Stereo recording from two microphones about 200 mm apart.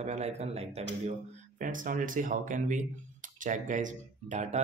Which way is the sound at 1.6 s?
40° right (ahead or behind).